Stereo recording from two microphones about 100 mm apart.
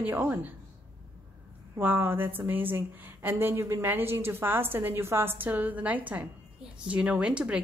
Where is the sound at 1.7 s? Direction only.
20° right (ahead or behind).